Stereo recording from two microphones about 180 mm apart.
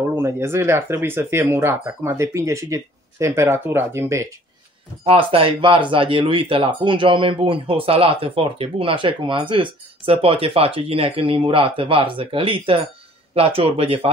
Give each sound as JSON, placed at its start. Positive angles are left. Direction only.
{"t": 0.1, "sound": "speech", "side_deg": -15}
{"t": 5.0, "sound": "speech", "side_deg": -30}